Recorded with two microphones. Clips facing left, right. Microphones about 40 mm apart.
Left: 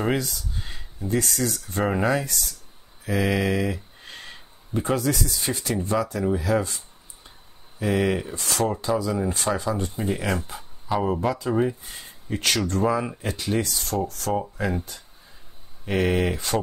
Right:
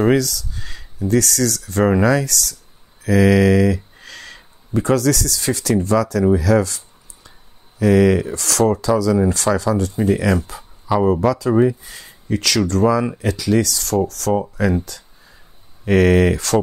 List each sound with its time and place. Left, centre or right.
0.1 s a sound: right
1.1 s speech: right
7.8 s speech: right
15.9 s speech: right